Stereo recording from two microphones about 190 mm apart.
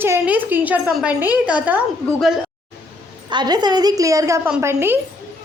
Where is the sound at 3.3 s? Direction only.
25° right (ahead or behind).